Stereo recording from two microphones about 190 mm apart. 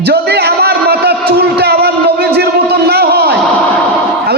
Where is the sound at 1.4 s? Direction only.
60° right (ahead or behind).